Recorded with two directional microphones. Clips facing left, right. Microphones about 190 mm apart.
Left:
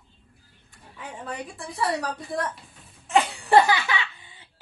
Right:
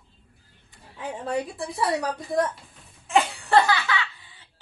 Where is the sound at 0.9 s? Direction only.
25° right (ahead or behind).